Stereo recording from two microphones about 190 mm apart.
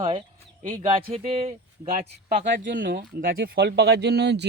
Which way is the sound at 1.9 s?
45° right (ahead or behind).